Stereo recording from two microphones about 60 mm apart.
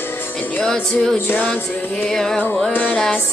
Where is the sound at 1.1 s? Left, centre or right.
Left.